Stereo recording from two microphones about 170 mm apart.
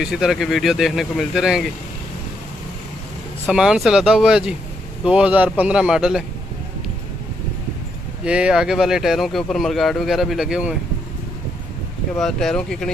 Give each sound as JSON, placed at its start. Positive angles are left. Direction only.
{"t": 0.0, "sound": "speech", "side_deg": 0}
{"t": 3.4, "sound": "speech", "side_deg": -5}
{"t": 8.2, "sound": "speech", "side_deg": -5}
{"t": 12.2, "sound": "speech", "side_deg": 0}